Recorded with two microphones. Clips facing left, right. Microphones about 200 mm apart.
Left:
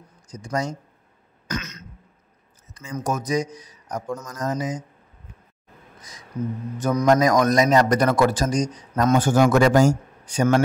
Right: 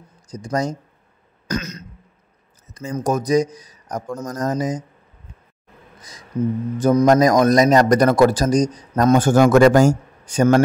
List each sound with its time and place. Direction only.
0.3 s a man's voice: 35° right (ahead or behind)
1.5 s throat clearing: 35° right (ahead or behind)
2.7 s a man's voice: 40° right (ahead or behind)
6.4 s a man's voice: 25° right (ahead or behind)
7.1 s a man's voice: 35° right (ahead or behind)
9.3 s speech: 50° right (ahead or behind)